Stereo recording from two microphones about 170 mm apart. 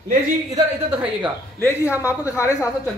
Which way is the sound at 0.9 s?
10° right (ahead or behind).